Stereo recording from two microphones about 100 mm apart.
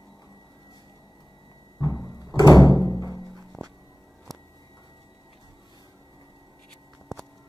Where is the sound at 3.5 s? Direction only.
Centre (ahead or behind).